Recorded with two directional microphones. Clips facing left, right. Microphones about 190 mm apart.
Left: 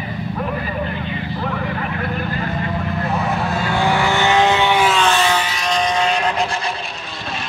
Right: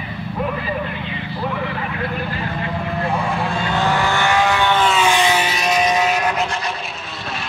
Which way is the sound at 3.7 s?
10° left (ahead or behind).